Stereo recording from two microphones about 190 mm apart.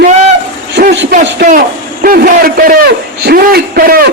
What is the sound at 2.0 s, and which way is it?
A man's voice, 50° right (ahead or behind).